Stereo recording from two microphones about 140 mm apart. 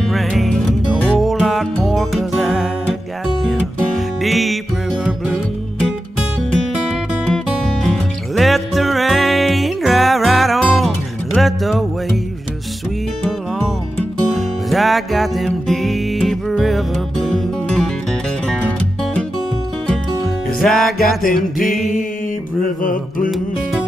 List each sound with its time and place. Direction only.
0.1 s music: centre (ahead or behind)
7.2 s music: 5° left (ahead or behind)
14.3 s music: centre (ahead or behind)
20.6 s music: centre (ahead or behind)
21.2 s music: 80° left
21.6 s a sound: centre (ahead or behind)
22.8 s mantra: 80° left